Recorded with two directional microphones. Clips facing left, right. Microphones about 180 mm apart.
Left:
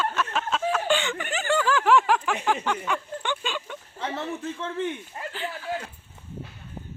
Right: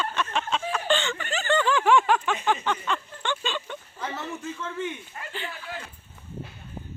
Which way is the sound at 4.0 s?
30° left (ahead or behind).